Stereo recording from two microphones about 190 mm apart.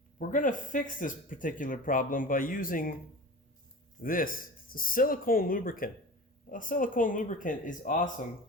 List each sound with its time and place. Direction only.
0.2 s speech: 45° left (ahead or behind)
4.0 s speech: 45° left (ahead or behind)